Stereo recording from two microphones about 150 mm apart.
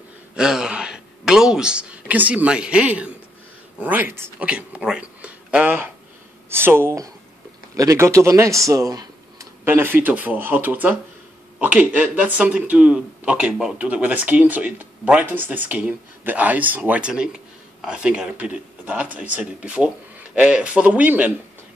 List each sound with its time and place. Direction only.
0.4 s speech: 5° right (ahead or behind)